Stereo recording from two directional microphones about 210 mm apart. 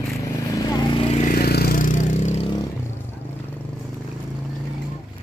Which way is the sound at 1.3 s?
45° left (ahead or behind).